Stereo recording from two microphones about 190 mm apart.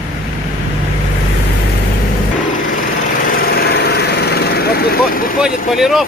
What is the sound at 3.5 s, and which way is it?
Lawn mower, 60° left (ahead or behind).